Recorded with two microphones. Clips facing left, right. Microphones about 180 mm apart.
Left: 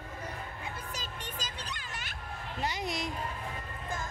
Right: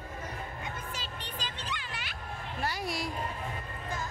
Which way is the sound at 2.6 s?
20° left (ahead or behind).